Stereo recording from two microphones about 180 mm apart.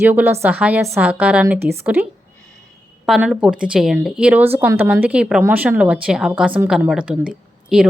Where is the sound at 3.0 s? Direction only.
Centre (ahead or behind).